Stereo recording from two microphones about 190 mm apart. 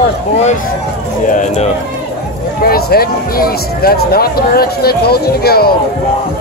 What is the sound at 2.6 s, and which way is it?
Speech, 55° left (ahead or behind).